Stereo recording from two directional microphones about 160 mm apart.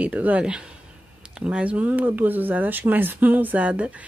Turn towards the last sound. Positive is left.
turn(degrees=-10)  # may be behind; listen again after turning